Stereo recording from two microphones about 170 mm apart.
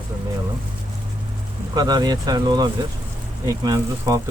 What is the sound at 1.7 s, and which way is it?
Speech, 25° right (ahead or behind).